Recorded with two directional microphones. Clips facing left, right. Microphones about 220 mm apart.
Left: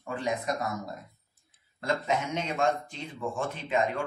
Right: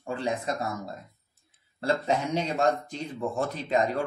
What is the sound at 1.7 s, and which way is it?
Speech, 35° right (ahead or behind).